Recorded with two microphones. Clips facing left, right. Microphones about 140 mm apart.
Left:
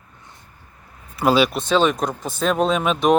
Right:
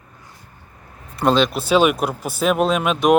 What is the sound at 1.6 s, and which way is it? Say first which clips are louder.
Speech: right 2 dB; 10° right (ahead or behind).